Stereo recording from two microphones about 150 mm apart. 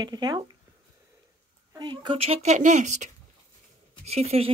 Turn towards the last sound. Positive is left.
turn(degrees=-45)  # may be behind; listen again after turning